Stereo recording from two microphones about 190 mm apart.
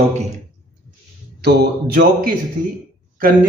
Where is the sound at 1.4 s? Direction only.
55° right (ahead or behind).